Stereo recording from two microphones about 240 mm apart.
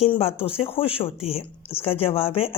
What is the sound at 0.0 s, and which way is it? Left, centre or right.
Speech, left.